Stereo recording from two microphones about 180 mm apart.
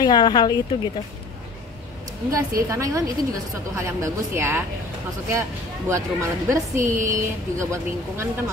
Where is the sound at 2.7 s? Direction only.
20° right (ahead or behind).